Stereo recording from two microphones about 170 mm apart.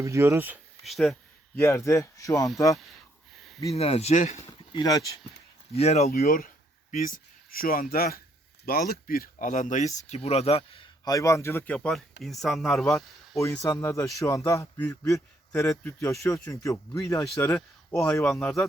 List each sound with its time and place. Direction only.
0.0 s speech: 15° right (ahead or behind)
0.9 s speech: centre (ahead or behind)
1.5 s speech: 15° left (ahead or behind)
3.3 s a sound: centre (ahead or behind)
3.8 s speech: 40° left (ahead or behind)
4.7 s speech: 25° left (ahead or behind)
5.7 s speech: 40° left (ahead or behind)
6.1 s speech: 60° left (ahead or behind)
7.5 s speech: 60° left (ahead or behind); by 10.8 s 35° left (ahead or behind)
11.0 s speech: 20° left (ahead or behind); by 13.4 s centre (ahead or behind)
13.4 s speech: 20° left (ahead or behind)
17.2 s speech: 5° left (ahead or behind)